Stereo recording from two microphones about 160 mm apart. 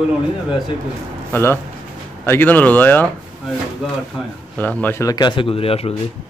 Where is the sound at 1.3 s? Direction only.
15° left (ahead or behind).